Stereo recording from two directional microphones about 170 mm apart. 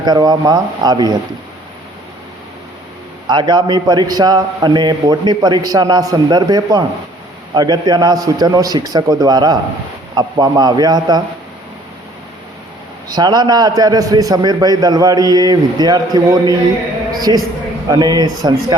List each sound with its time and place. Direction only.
0.0 s a man's voice: 25° right (ahead or behind)
3.2 s a man's voice: 25° right (ahead or behind)
13.1 s a man's voice: 25° right (ahead or behind)